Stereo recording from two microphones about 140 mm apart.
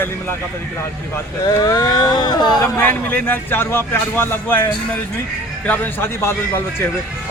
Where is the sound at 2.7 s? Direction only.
15° left (ahead or behind).